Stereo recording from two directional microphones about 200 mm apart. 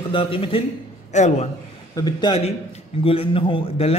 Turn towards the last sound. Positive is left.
turn(degrees=25)  # may be behind; listen again after turning